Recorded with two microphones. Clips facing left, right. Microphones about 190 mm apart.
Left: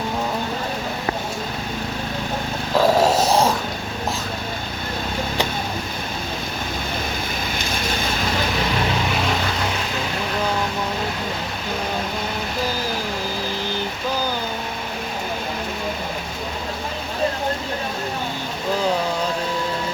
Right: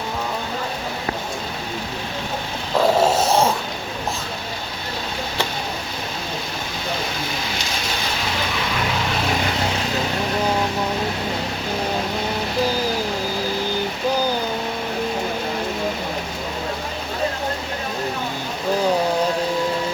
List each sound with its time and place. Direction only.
2.7 s dog: centre (ahead or behind)
7.5 s vehicle: 50° left (ahead or behind)